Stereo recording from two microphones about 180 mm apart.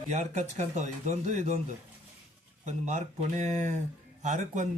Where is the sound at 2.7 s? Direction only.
40° right (ahead or behind).